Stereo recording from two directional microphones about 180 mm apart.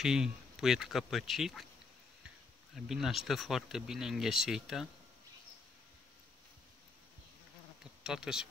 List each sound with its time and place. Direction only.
0.0 s speech: 5° right (ahead or behind)
2.7 s speech: centre (ahead or behind)
8.0 s speech: 5° right (ahead or behind)